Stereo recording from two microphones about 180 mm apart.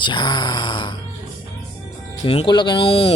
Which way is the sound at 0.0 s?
25° left (ahead or behind).